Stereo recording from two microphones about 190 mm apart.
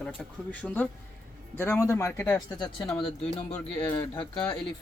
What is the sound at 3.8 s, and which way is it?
Speech, 10° left (ahead or behind).